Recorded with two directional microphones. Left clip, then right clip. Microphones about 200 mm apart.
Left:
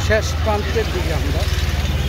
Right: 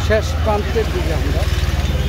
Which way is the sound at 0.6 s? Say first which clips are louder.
Right 1 dB; 55° right (ahead or behind).